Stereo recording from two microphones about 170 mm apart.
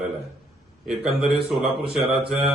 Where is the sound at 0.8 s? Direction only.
Centre (ahead or behind).